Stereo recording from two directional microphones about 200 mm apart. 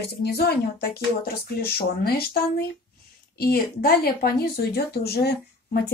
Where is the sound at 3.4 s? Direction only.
50° left (ahead or behind).